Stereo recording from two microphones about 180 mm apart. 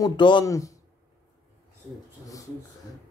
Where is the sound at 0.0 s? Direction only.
25° left (ahead or behind).